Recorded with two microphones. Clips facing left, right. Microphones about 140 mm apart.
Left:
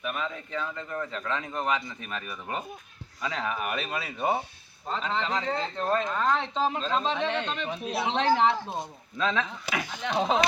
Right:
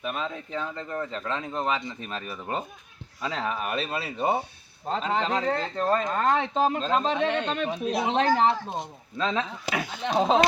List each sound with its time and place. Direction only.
0.0 s speech: 30° right (ahead or behind)
4.9 s speech: 45° right (ahead or behind)
9.1 s speech: 30° right (ahead or behind)